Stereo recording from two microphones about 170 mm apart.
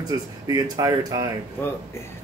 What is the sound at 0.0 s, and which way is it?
Speech, 20° right (ahead or behind).